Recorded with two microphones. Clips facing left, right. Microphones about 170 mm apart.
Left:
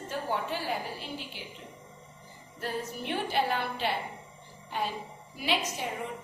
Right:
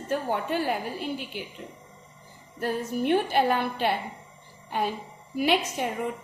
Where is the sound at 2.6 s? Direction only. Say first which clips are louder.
Right 8 dB; 55° right (ahead or behind).